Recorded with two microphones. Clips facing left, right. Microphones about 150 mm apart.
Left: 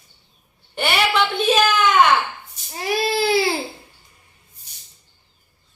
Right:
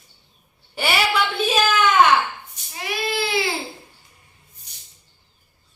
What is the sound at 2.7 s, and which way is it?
Speech, 35° left (ahead or behind).